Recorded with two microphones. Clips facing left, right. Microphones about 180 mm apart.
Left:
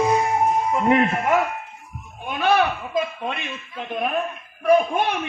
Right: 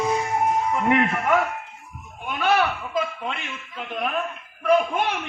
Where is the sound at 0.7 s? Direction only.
30° left (ahead or behind).